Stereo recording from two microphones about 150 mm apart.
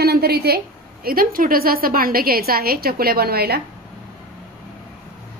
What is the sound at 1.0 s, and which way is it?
A woman's voice, 75° right (ahead or behind).